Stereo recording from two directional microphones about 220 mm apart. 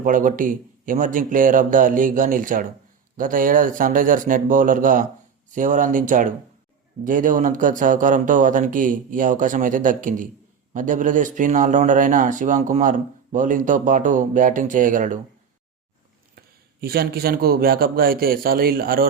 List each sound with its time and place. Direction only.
0.0 s speech: 35° right (ahead or behind)
16.8 s a man's voice: 45° right (ahead or behind)